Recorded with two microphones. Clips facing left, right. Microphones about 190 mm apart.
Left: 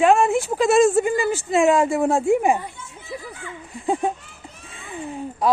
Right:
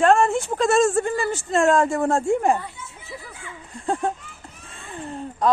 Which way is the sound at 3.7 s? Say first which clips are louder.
Left 2 dB; 5° left (ahead or behind).